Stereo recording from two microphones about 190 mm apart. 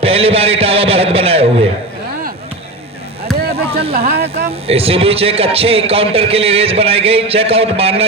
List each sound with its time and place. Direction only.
0.0 s a man's voice: 30° right (ahead or behind)
3.3 s a sound: centre (ahead or behind)
4.1 s speech: 55° right (ahead or behind)
4.6 s a man's voice: 30° right (ahead or behind)